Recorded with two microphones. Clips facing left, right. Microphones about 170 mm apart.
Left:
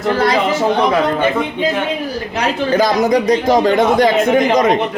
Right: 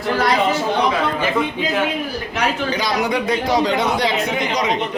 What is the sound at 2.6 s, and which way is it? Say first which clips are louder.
A man's voice: left 7 dB; 50° left (ahead or behind).